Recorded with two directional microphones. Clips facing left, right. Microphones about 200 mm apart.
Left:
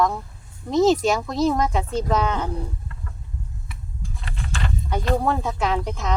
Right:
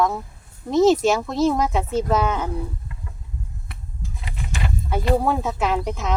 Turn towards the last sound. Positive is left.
turn(degrees=-5)  # may be behind; listen again after turning